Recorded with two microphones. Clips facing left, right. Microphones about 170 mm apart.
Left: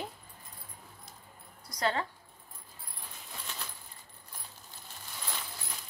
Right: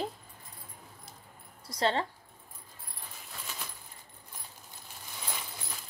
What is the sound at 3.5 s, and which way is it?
Keys jangling, 5° right (ahead or behind).